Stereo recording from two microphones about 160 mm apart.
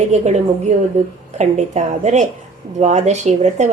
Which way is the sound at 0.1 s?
45° right (ahead or behind).